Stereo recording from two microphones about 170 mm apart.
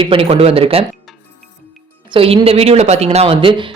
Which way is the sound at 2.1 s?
35° right (ahead or behind).